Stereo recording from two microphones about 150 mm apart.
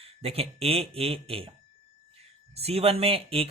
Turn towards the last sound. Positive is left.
turn(degrees=-40)  # may be behind; listen again after turning